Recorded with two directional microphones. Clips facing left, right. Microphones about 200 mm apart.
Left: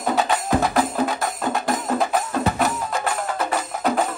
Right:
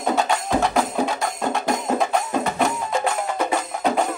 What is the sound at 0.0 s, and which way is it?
Music, centre (ahead or behind).